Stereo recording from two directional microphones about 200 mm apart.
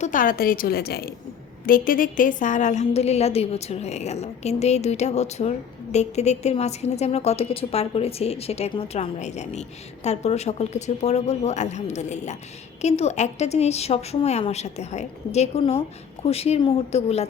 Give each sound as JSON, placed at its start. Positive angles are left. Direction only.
{"t": 0.0, "sound": "a woman's voice", "side_deg": 40}